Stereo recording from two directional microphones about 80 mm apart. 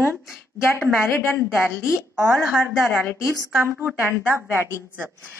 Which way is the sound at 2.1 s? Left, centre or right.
Right.